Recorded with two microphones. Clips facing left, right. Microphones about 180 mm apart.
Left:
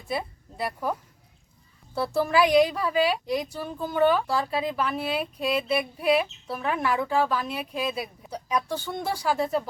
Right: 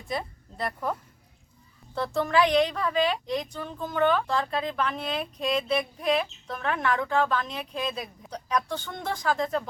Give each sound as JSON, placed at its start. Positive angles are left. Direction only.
{"t": 0.1, "sound": "speech", "side_deg": 5}
{"t": 2.0, "sound": "speech", "side_deg": 10}